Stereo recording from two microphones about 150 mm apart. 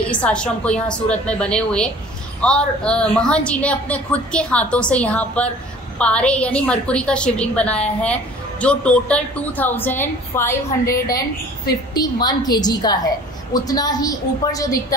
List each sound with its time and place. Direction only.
0.1 s a woman's voice: 5° left (ahead or behind); by 14.8 s 25° left (ahead or behind)